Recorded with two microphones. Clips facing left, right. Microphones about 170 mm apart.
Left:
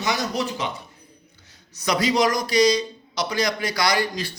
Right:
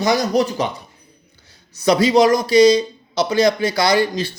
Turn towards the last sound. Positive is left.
turn(degrees=-25)  # may be behind; listen again after turning